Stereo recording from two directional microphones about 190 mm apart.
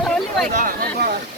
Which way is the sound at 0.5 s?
45° right (ahead or behind).